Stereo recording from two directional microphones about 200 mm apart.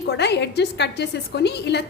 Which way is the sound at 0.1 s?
55° left (ahead or behind).